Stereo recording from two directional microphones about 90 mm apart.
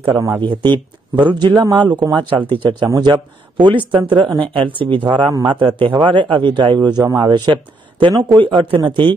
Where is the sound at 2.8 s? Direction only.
50° right (ahead or behind).